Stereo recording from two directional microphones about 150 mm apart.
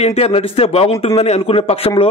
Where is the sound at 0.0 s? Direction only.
40° left (ahead or behind).